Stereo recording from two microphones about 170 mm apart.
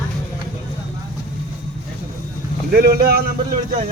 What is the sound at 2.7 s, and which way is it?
Speech, 60° right (ahead or behind).